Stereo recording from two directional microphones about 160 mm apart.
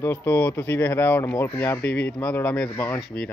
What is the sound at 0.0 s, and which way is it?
Speech, 15° left (ahead or behind).